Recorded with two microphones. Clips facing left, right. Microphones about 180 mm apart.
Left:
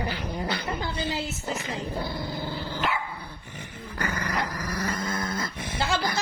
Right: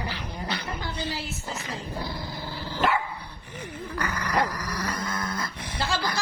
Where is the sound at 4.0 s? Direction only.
25° left (ahead or behind).